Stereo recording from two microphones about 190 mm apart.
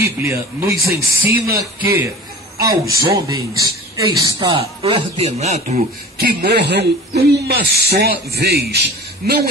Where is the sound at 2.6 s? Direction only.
15° right (ahead or behind); by 5.8 s 35° right (ahead or behind).